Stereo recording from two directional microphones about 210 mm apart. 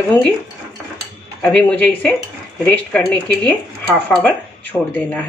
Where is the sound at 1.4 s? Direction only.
5° left (ahead or behind).